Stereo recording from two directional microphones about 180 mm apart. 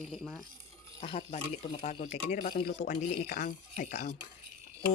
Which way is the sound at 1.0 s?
35° left (ahead or behind).